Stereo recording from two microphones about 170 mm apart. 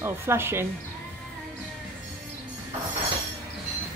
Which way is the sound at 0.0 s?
15° right (ahead or behind).